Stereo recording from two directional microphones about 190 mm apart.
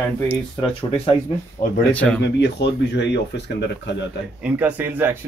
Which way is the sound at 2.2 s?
65° left (ahead or behind).